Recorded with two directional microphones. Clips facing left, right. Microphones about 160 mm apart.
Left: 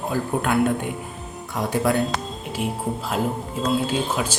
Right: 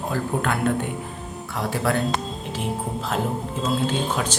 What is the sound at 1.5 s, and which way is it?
Speech, 15° left (ahead or behind).